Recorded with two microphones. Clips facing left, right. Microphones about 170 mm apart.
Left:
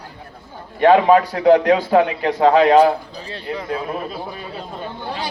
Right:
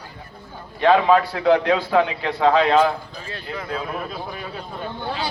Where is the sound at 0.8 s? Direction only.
45° left (ahead or behind).